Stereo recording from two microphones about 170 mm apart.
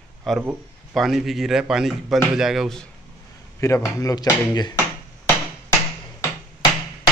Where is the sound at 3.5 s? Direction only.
15° left (ahead or behind).